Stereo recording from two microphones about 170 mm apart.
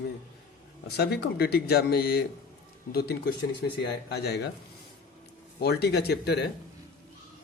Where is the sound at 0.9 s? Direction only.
70° left (ahead or behind).